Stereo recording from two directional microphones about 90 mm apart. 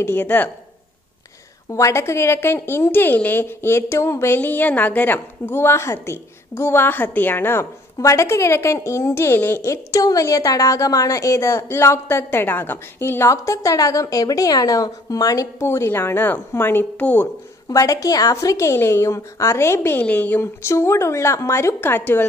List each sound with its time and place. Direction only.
0.0 s a woman's voice: 25° left (ahead or behind)
1.7 s a woman's voice: 35° left (ahead or behind)
17.6 s a woman's voice: 40° left (ahead or behind); by 22.3 s 25° left (ahead or behind)